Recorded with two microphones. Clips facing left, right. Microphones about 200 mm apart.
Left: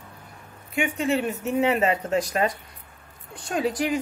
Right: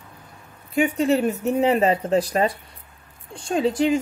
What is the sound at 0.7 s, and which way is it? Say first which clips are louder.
Speech: right 5 dB; 35° right (ahead or behind).